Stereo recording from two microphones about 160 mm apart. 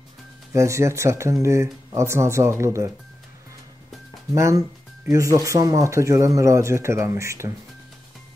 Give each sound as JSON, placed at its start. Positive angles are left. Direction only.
{"t": 0.5, "sound": "speech", "side_deg": -20}
{"t": 4.3, "sound": "speech", "side_deg": -20}